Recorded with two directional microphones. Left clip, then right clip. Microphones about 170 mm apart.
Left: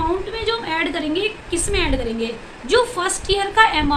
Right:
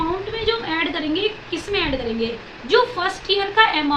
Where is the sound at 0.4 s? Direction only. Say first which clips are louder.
Even; 20° left (ahead or behind).